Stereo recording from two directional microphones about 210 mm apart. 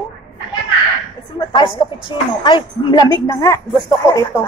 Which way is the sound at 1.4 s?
25° left (ahead or behind).